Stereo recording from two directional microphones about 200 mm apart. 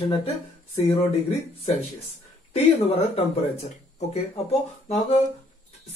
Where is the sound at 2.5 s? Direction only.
30° left (ahead or behind).